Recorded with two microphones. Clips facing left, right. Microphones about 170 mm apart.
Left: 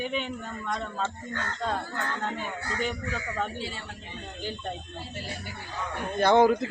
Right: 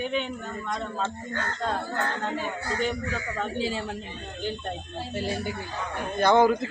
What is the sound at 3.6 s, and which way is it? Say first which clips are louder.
Speech: right 8 dB; 90° right.